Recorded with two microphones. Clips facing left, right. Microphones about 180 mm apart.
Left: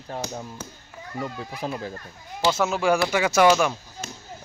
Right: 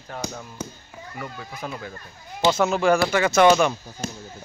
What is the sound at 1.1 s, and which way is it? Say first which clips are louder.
Speech: left 4 dB; 30° left (ahead or behind).